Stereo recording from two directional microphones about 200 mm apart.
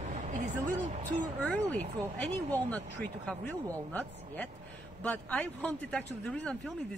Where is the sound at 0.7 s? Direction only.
40° right (ahead or behind).